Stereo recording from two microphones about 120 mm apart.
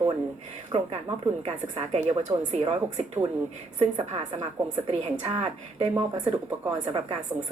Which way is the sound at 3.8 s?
65° right (ahead or behind).